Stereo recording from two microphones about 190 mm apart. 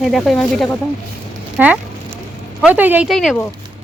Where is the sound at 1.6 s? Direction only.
5° right (ahead or behind).